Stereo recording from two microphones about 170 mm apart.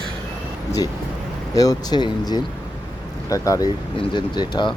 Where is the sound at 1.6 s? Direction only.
25° left (ahead or behind).